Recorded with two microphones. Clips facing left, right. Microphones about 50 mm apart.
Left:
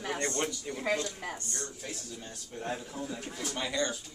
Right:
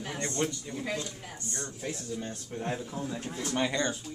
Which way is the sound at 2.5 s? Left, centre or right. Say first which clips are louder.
Right 2 dB; right.